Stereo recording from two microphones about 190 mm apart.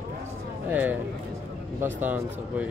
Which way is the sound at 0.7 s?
10° right (ahead or behind).